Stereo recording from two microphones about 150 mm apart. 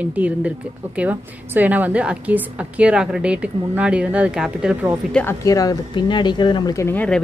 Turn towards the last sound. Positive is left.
turn(degrees=10)  # may be behind; listen again after turning